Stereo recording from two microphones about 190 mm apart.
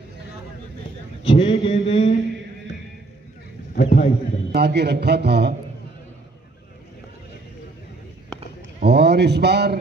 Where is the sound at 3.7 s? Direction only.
40° left (ahead or behind).